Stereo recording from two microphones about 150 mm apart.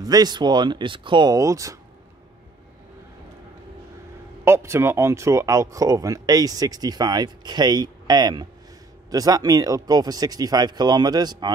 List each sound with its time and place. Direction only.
0.0 s speech: 25° right (ahead or behind)
4.5 s speech: 15° right (ahead or behind)